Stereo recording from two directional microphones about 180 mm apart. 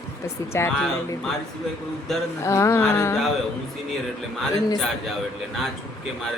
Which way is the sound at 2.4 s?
15° left (ahead or behind).